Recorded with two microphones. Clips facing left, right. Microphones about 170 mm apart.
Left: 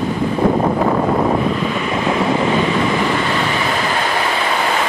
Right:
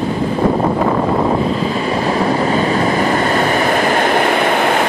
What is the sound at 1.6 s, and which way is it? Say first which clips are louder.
Vehicle: right 2 dB; 35° right (ahead or behind).